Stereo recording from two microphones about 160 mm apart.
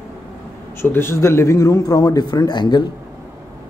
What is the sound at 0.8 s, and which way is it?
Speech, 15° left (ahead or behind).